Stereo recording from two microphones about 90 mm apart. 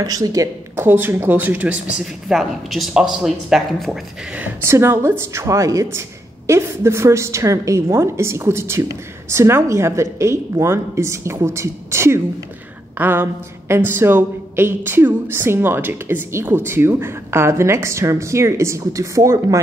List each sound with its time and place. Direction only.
0.0 s a woman's voice: 45° right (ahead or behind)
0.7 s a woman's voice: 25° right (ahead or behind)
2.2 s speech: centre (ahead or behind)
4.6 s a woman's voice: 30° right (ahead or behind)